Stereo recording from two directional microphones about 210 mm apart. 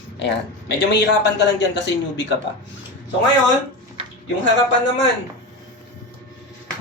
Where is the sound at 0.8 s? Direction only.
55° left (ahead or behind).